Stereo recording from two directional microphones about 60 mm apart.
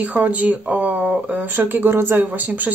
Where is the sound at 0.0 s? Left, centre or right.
Right.